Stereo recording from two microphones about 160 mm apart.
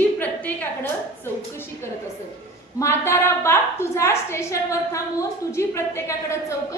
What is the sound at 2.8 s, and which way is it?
A woman's voice, 15° left (ahead or behind).